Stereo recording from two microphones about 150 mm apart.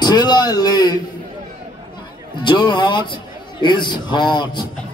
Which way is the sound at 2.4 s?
30° left (ahead or behind).